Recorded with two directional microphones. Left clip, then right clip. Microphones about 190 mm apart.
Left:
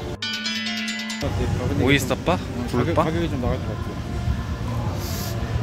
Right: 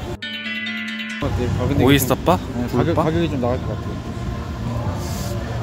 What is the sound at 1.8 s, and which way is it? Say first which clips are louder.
Speech: right 4 dB; 25° right (ahead or behind).